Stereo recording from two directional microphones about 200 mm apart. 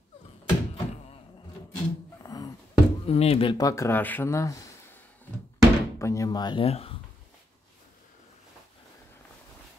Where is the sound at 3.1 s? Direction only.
30° left (ahead or behind); by 4.5 s 15° left (ahead or behind).